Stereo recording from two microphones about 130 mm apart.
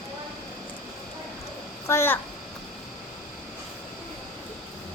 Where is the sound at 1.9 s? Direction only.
20° left (ahead or behind).